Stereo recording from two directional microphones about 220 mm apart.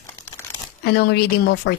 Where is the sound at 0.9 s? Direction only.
45° left (ahead or behind).